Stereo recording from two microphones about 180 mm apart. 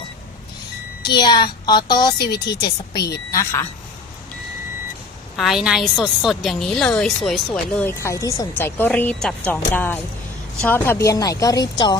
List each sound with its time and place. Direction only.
1.1 s a woman's voice: 25° left (ahead or behind)
2.1 s speech: 65° left (ahead or behind)
2.5 s a woman's voice: 20° left (ahead or behind)
5.4 s a woman's voice: centre (ahead or behind)
7.9 s a woman's voice: 15° left (ahead or behind)